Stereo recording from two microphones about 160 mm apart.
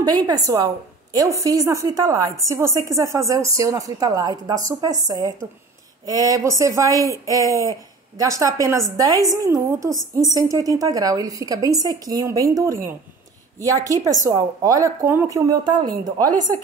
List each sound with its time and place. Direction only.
0.0 s a woman's voice: 25° right (ahead or behind)